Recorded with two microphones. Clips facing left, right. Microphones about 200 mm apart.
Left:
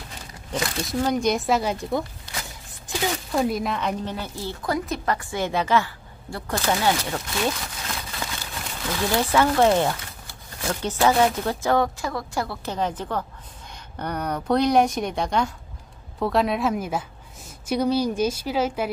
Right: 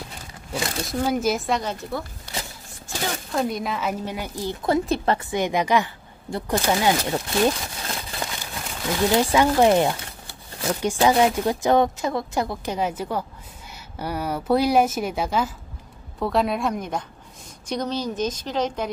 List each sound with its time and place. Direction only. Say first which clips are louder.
0.5 s speech: left 1 dB; 5° right (ahead or behind); by 3.0 s 15° left (ahead or behind)
3.3 s speech: left 1 dB; centre (ahead or behind); by 8.2 s 25° right (ahead or behind)
9.0 s speech: right 2 dB; 15° right (ahead or behind); by 18.9 s 10° left (ahead or behind)